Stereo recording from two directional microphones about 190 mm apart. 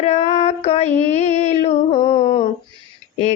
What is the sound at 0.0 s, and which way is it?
Female singing, 35° left (ahead or behind).